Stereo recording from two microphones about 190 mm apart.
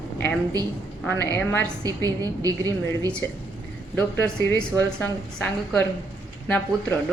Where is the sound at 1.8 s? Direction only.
20° right (ahead or behind).